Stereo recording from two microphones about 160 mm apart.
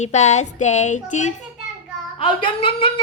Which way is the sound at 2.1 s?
35° left (ahead or behind).